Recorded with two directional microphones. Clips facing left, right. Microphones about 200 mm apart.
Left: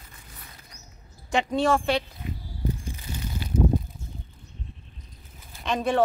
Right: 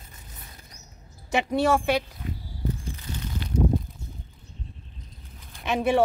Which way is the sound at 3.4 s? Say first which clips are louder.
Left 1 dB; 5° left (ahead or behind).